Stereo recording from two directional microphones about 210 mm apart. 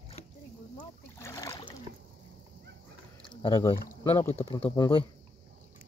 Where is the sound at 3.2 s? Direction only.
25° left (ahead or behind).